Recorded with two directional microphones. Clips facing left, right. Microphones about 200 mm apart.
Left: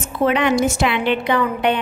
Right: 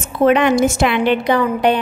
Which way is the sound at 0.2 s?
50° right (ahead or behind).